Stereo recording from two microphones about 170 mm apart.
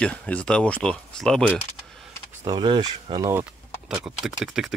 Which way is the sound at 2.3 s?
20° right (ahead or behind).